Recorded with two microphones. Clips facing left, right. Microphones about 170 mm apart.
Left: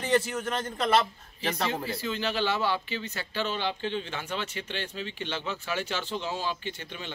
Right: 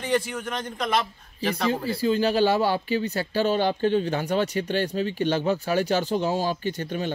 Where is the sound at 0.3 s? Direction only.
5° left (ahead or behind).